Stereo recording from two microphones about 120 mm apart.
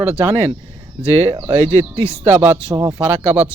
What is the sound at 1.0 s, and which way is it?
Speech, 60° right (ahead or behind).